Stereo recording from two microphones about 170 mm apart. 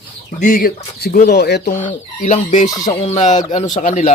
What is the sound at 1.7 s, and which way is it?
Speech, 50° left (ahead or behind).